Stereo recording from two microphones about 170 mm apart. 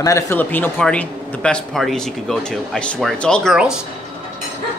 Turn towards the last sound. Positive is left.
turn(degrees=0)  # may be behind; listen again after turning